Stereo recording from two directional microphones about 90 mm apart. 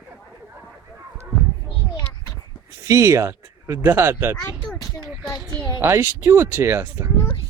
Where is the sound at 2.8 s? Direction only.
30° right (ahead or behind).